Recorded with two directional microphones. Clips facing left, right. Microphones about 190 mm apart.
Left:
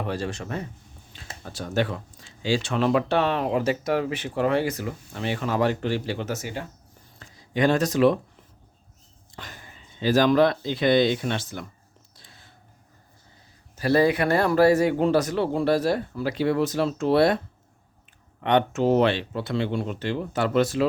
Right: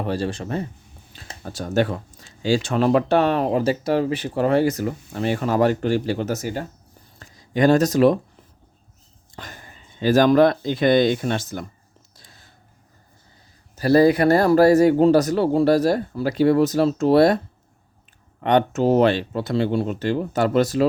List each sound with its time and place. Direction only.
0.0 s speech: 35° right (ahead or behind)
1.1 s a sound: 40° right (ahead or behind)
2.6 s speech: 45° right (ahead or behind)
9.3 s speech: 45° right (ahead or behind)
12.1 s a sound: 40° right (ahead or behind)
13.7 s speech: 40° right (ahead or behind)